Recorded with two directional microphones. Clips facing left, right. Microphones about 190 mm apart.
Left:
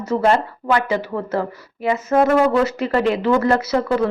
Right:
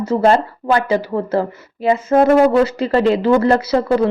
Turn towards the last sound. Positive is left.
turn(degrees=-30)  # may be behind; listen again after turning